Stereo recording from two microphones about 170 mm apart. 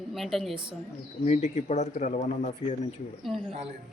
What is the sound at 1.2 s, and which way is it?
Speech, 40° left (ahead or behind).